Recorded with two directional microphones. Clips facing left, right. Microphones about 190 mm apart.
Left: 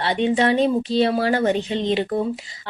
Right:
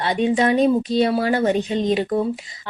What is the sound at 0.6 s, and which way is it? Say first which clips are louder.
Speech: right 1 dB; 10° right (ahead or behind).